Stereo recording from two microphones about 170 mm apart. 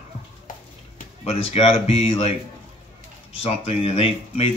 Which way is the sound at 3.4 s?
35° left (ahead or behind).